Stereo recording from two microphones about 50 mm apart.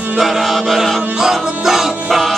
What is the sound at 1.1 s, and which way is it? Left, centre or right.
Music, centre.